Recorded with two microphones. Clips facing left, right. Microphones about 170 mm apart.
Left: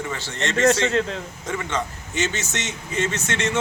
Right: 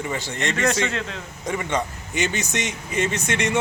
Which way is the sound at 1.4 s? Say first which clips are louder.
Right 2 dB; 15° right (ahead or behind).